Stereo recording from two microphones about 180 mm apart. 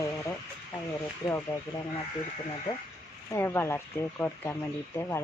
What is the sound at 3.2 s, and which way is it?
Speech, 15° left (ahead or behind).